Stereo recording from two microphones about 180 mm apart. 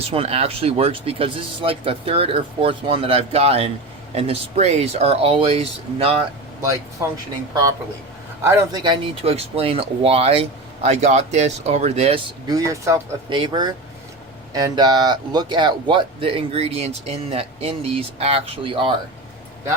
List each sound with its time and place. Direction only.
0.0 s speech: 35° right (ahead or behind)
7.0 s speech: 15° right (ahead or behind)
8.4 s speech: 25° right (ahead or behind)
12.5 s speech: 20° right (ahead or behind)